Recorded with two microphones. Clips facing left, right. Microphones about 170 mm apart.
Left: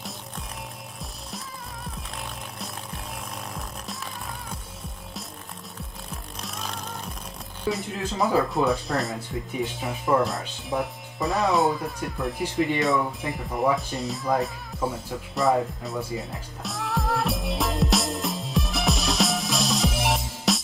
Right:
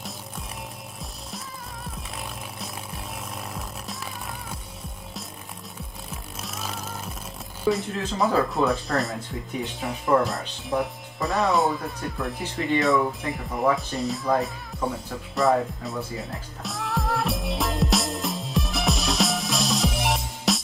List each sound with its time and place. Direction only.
6.4 s music: 5° right (ahead or behind)
7.7 s speech: centre (ahead or behind)
9.8 s music: centre (ahead or behind)